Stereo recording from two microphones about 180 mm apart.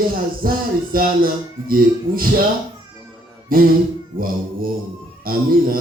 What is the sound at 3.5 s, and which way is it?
Speech, 50° right (ahead or behind).